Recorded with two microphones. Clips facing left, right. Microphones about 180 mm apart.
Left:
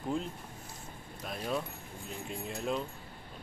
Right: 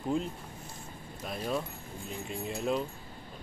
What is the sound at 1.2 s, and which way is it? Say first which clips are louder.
Speech: right 2 dB; centre (ahead or behind).